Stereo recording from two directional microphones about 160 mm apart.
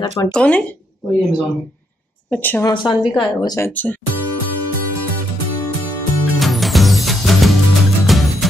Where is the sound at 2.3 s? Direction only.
10° left (ahead or behind).